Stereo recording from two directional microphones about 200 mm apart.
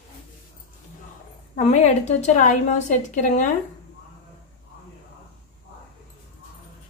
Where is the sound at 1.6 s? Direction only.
35° left (ahead or behind).